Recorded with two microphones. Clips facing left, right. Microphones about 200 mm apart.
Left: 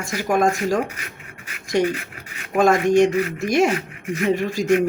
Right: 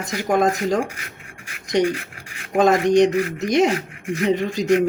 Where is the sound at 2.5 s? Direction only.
20° right (ahead or behind).